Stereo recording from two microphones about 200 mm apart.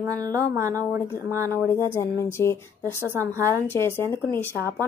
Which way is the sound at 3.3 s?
15° right (ahead or behind).